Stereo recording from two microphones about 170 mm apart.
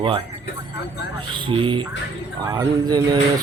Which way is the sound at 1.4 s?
30° right (ahead or behind).